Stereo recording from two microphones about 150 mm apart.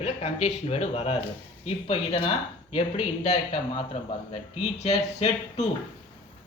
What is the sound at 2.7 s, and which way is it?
Speech, 40° left (ahead or behind).